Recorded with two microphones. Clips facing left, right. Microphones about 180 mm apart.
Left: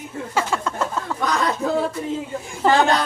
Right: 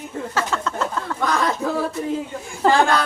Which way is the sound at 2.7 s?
20° left (ahead or behind).